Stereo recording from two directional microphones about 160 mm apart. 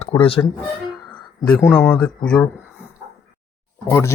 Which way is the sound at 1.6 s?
15° left (ahead or behind).